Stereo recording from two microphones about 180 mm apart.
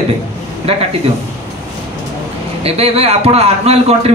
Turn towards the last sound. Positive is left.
turn(degrees=-35)  # may be behind; listen again after turning